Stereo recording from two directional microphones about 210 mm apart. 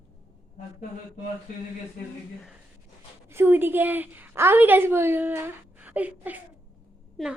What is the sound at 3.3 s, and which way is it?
A woman's voice, 10° right (ahead or behind).